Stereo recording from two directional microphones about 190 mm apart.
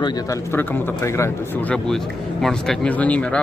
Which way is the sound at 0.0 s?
20° left (ahead or behind).